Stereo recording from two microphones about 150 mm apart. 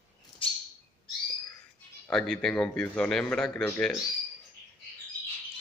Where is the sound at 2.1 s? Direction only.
5° left (ahead or behind).